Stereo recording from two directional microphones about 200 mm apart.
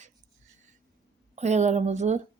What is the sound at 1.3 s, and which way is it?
Speech, 35° right (ahead or behind).